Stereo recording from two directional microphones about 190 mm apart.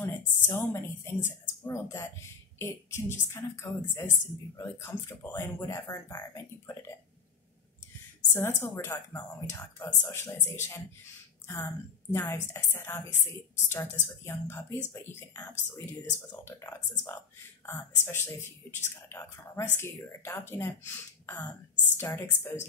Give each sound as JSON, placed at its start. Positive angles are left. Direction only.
{"t": 0.0, "sound": "a woman's voice", "side_deg": 15}
{"t": 8.3, "sound": "a woman's voice", "side_deg": 15}
{"t": 18.0, "sound": "a woman's voice", "side_deg": 15}